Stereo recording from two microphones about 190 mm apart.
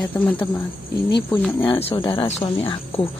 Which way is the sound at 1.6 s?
25° left (ahead or behind).